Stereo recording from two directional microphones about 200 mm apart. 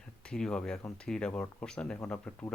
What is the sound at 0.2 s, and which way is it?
Speech, 5° left (ahead or behind).